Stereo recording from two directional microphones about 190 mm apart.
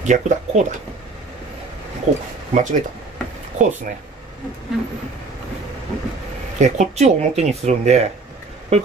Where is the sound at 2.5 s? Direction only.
40° right (ahead or behind).